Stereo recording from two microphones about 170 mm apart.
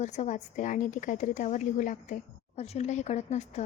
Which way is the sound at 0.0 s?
45° left (ahead or behind).